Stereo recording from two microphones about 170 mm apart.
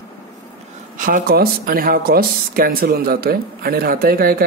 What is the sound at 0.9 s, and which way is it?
Speech, 50° right (ahead or behind).